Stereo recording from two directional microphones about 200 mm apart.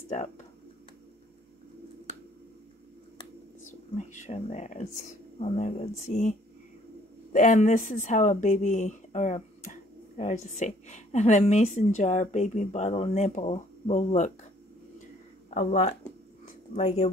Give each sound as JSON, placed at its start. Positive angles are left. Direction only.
{"t": 3.6, "sound": "speech", "side_deg": 40}
{"t": 7.3, "sound": "speech", "side_deg": 40}
{"t": 15.5, "sound": "speech", "side_deg": 35}